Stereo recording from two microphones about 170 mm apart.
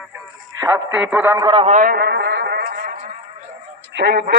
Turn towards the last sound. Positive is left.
turn(degrees=-80)